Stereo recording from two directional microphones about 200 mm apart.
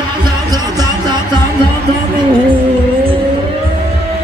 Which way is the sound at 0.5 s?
20° right (ahead or behind).